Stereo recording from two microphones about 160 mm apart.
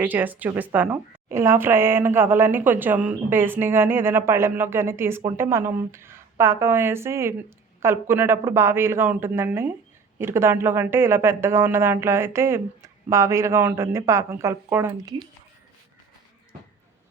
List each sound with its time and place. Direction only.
0.0 s a woman's voice: 10° right (ahead or behind)